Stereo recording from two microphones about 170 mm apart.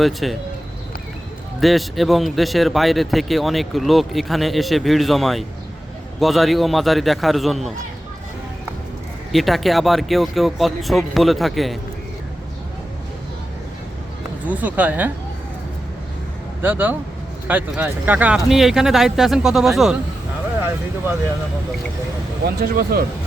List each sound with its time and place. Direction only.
0.0 s speech: centre (ahead or behind)
1.6 s speech: centre (ahead or behind)
9.3 s speech: centre (ahead or behind)
14.4 s speech: 10° right (ahead or behind)
16.6 s speech: 10° right (ahead or behind)
20.7 s speech: 10° right (ahead or behind)
22.7 s speech: 60° right (ahead or behind)